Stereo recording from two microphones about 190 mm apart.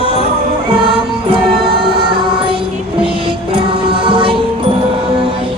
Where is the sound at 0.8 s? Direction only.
25° right (ahead or behind).